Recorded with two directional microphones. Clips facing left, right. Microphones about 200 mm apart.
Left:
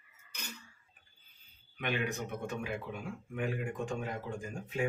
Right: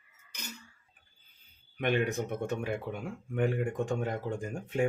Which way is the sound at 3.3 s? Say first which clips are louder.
Right 6 dB; 60° right (ahead or behind).